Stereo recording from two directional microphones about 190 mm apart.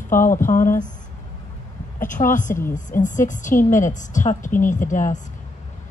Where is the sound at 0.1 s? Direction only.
45° left (ahead or behind).